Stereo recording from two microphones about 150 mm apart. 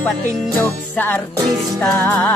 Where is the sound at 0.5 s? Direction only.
10° left (ahead or behind).